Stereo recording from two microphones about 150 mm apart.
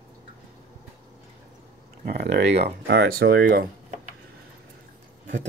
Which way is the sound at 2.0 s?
90° right.